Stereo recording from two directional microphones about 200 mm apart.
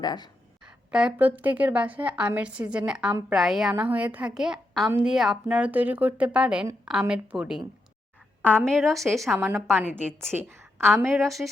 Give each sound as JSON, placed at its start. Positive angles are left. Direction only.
{"t": 0.0, "sound": "speech", "side_deg": 20}
{"t": 0.9, "sound": "a woman's voice", "side_deg": -5}
{"t": 9.3, "sound": "a woman's voice", "side_deg": -10}
{"t": 11.1, "sound": "a woman's voice", "side_deg": 0}